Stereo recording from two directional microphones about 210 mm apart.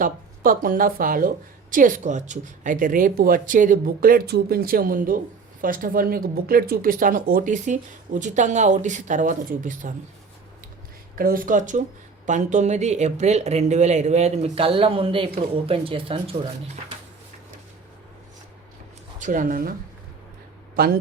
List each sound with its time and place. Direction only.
0.0 s speech: 40° right (ahead or behind)
11.1 s speech: 45° right (ahead or behind); by 16.5 s 25° right (ahead or behind)
19.2 s speech: 40° right (ahead or behind)
20.7 s a man's voice: 45° right (ahead or behind)